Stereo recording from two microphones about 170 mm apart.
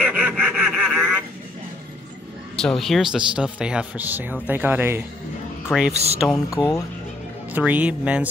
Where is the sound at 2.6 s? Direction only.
Centre (ahead or behind).